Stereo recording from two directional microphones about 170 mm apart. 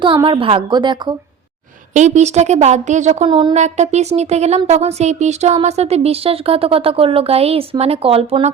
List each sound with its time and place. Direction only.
0.3 s speech: 30° right (ahead or behind)
1.9 s a woman's voice: 45° right (ahead or behind)
3.2 s speech: 30° right (ahead or behind)
3.5 s speech: 45° right (ahead or behind)